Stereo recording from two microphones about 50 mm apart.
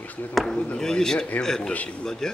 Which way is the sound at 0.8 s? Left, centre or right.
Centre.